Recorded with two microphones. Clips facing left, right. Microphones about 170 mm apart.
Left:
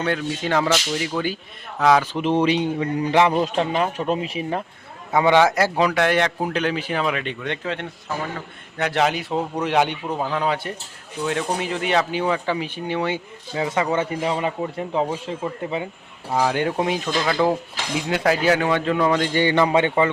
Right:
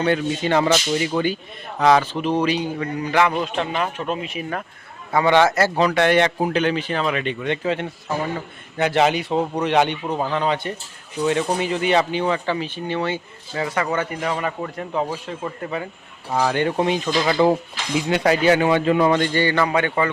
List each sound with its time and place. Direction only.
0.0 s speech: centre (ahead or behind)
2.1 s a man's voice: 20° left (ahead or behind)
5.1 s speech: 10° left (ahead or behind)
16.3 s speech: 5° left (ahead or behind)
19.3 s a man's voice: 15° left (ahead or behind)